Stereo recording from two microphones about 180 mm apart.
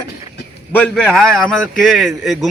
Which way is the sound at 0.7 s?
5° left (ahead or behind).